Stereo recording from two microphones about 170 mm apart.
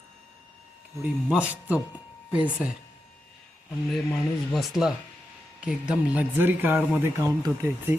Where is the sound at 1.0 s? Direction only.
5° right (ahead or behind).